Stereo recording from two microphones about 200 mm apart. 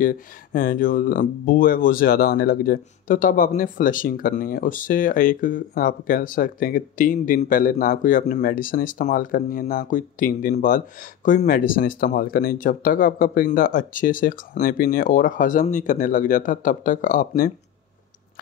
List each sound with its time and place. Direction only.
0.0 s speech: 45° left (ahead or behind)